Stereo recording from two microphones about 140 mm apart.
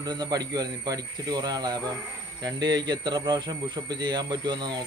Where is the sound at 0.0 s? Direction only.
30° right (ahead or behind).